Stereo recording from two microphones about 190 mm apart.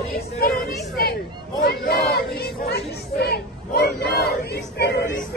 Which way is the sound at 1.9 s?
55° left (ahead or behind).